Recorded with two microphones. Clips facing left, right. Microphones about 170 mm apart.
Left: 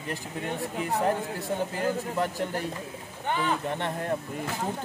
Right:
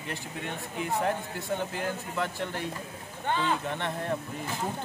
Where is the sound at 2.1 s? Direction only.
40° left (ahead or behind).